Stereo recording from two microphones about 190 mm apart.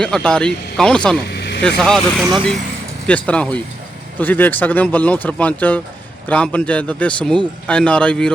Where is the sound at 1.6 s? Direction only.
5° left (ahead or behind).